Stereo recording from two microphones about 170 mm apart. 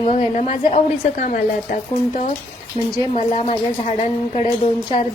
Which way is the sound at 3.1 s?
40° left (ahead or behind).